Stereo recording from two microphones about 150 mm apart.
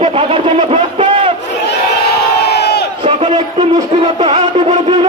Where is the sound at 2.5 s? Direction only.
90° left.